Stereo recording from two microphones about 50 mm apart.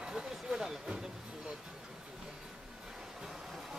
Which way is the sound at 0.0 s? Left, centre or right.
Centre.